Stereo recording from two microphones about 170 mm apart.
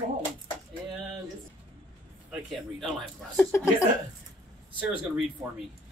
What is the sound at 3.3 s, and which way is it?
Speech, 15° left (ahead or behind).